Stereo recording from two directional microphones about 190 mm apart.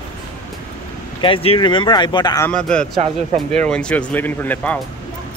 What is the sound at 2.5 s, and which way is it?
Speech, 5° left (ahead or behind).